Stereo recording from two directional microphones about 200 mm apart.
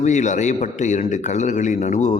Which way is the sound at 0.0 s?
35° left (ahead or behind).